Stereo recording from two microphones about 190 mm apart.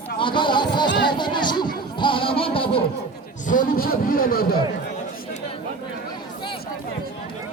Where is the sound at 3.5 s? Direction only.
45° left (ahead or behind).